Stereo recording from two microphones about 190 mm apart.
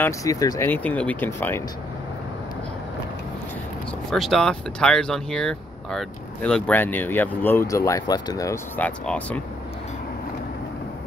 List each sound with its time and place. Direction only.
0.0 s speech: 15° left (ahead or behind)
4.1 s speech: centre (ahead or behind)